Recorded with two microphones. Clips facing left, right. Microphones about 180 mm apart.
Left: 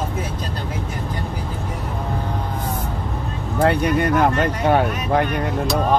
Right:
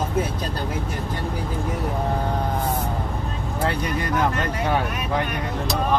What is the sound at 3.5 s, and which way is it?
Speech, 65° left (ahead or behind).